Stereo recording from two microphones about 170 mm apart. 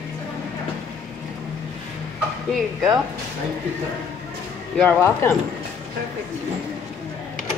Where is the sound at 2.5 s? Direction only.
Centre (ahead or behind).